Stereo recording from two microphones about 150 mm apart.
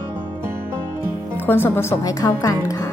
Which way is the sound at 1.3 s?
15° left (ahead or behind).